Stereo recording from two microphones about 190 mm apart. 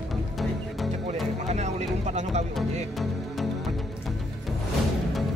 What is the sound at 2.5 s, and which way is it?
Music, centre (ahead or behind).